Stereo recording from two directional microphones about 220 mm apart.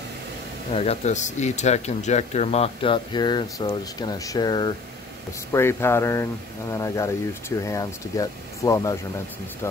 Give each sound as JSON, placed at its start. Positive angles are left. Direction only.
{"t": 0.7, "sound": "speech", "side_deg": 30}